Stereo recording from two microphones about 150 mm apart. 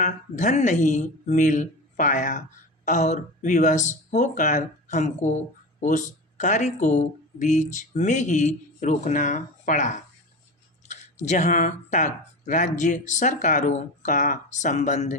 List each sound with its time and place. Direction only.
0.0 s speech: 55° left (ahead or behind)
11.2 s speech: 50° left (ahead or behind)